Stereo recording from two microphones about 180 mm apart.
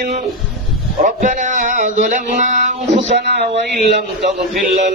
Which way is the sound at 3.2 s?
70° right (ahead or behind).